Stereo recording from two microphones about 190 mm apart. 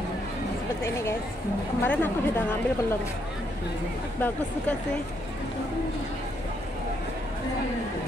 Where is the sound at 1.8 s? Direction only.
10° left (ahead or behind).